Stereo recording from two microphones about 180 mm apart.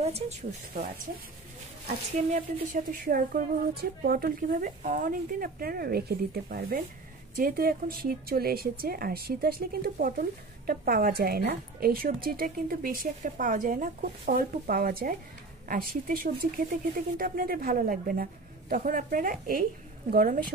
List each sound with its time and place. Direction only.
0.0 s speech: 35° right (ahead or behind)
2.1 s speech: 45° right (ahead or behind)